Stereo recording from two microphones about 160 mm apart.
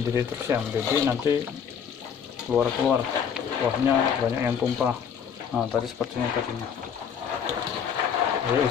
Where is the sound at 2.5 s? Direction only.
5° right (ahead or behind).